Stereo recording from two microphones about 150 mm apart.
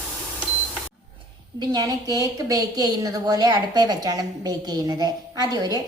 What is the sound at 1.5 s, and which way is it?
A woman's voice, 25° right (ahead or behind).